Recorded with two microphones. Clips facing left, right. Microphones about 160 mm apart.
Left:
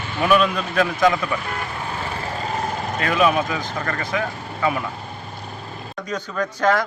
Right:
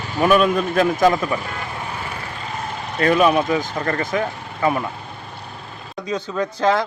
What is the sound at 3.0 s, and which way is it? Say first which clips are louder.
Speech: right 4 dB; 40° right (ahead or behind).